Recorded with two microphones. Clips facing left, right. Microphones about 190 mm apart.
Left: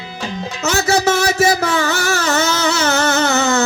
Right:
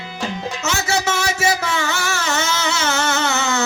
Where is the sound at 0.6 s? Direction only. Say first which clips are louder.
Left 7 dB; 40° left (ahead or behind).